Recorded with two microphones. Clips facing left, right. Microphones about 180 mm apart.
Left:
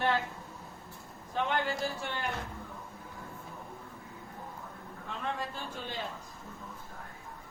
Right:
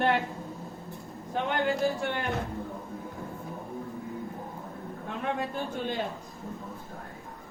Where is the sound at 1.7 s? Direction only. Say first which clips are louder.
Right 7 dB; 55° right (ahead or behind).